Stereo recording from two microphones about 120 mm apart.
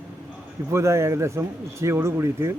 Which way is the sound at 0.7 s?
25° right (ahead or behind).